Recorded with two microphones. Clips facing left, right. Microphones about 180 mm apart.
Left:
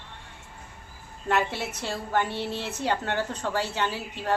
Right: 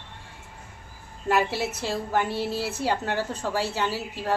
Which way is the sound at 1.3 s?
5° right (ahead or behind).